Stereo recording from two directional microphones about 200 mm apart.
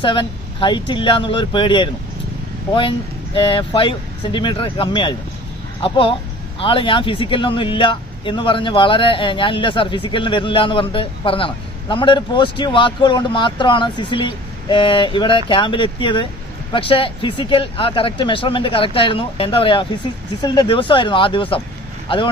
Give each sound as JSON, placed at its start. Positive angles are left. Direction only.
{"t": 0.0, "sound": "speech", "side_deg": 25}
{"t": 3.3, "sound": "speech", "side_deg": 25}